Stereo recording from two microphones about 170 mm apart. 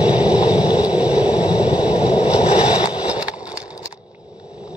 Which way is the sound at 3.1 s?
5° right (ahead or behind).